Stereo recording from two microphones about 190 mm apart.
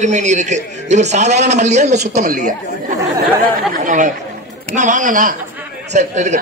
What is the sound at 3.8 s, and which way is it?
A man's voice, 40° right (ahead or behind).